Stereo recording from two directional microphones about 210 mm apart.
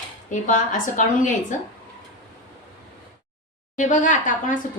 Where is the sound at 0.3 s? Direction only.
35° left (ahead or behind).